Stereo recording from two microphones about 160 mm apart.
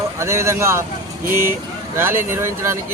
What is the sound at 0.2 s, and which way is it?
Speech, 15° right (ahead or behind).